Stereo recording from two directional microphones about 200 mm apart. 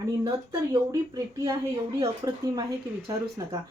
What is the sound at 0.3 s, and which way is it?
A woman's voice, 20° right (ahead or behind).